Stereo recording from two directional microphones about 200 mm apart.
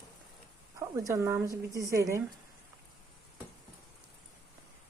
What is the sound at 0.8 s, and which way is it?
Speech, 15° right (ahead or behind).